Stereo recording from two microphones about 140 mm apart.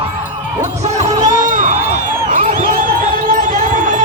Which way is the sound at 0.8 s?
55° right (ahead or behind).